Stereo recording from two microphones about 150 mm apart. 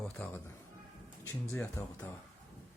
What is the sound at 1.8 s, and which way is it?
Speech, 15° left (ahead or behind).